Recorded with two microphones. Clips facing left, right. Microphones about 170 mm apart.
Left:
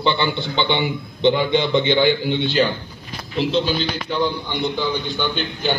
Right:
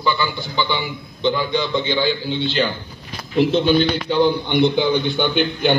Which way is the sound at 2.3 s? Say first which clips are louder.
Left 1 dB; 55° left (ahead or behind).